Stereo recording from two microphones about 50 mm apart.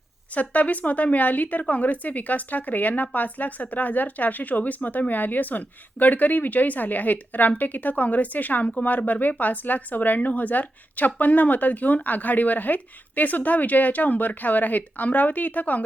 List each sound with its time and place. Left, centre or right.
0.3 s speech: left